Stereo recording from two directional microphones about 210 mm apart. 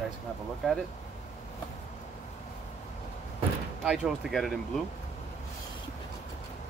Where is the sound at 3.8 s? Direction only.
Centre (ahead or behind).